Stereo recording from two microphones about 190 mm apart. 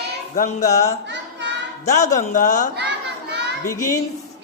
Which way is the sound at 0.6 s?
15° left (ahead or behind).